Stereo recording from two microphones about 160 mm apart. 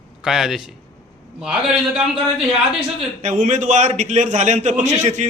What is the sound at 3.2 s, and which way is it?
A man's voice, 50° right (ahead or behind).